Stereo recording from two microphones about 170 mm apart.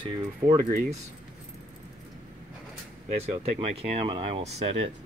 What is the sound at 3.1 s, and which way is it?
Speech, 40° right (ahead or behind).